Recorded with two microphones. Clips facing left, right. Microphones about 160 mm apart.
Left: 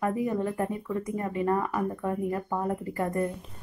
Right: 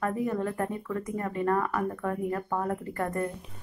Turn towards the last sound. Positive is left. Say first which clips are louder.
# left 2 dB
turn(degrees=15)  # may be behind; listen again after turning